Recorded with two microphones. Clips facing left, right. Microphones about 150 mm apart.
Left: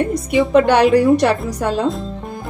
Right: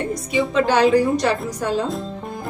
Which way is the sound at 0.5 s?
60° left (ahead or behind).